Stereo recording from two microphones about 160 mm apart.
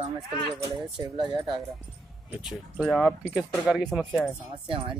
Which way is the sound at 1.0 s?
30° right (ahead or behind).